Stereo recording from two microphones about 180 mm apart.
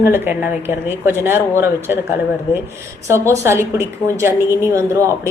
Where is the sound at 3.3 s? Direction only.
15° right (ahead or behind).